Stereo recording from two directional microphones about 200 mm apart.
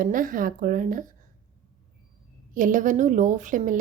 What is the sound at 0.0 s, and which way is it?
A woman's voice, 45° right (ahead or behind).